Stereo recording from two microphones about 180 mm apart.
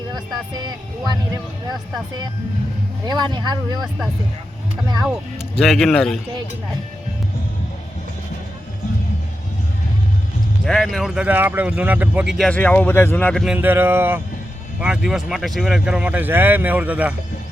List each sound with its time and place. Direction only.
0.1 s speech: 25° right (ahead or behind)
3.1 s speech: 25° right (ahead or behind)
5.5 s speech: centre (ahead or behind)
10.7 s speech: centre (ahead or behind)
13.4 s speech: 5° right (ahead or behind)